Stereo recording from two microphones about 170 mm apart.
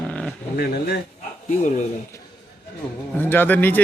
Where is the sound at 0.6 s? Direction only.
65° left (ahead or behind).